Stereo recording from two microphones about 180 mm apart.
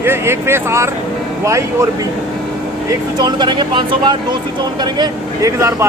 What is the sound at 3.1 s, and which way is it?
Speech, 25° right (ahead or behind).